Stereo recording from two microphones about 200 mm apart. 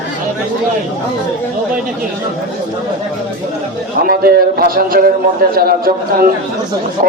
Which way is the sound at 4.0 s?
50° right (ahead or behind).